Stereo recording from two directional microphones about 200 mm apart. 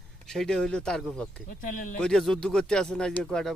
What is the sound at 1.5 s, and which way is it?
Speech, 40° left (ahead or behind).